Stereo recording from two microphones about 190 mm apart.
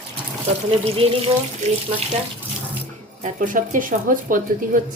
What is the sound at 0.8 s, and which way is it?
Speech, 30° right (ahead or behind).